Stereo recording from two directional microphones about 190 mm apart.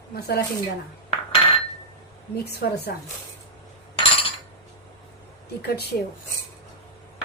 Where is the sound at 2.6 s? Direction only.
55° left (ahead or behind).